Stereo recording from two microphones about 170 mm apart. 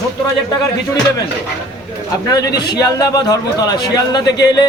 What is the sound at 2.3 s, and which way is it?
A man's voice, 20° left (ahead or behind).